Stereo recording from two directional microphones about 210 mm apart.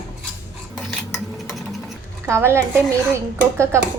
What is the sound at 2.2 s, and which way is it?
A woman's voice, 10° right (ahead or behind).